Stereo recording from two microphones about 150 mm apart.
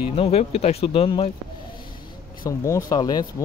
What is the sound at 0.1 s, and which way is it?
Speech, 40° left (ahead or behind).